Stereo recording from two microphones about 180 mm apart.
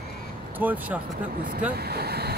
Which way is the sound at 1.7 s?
60° right (ahead or behind).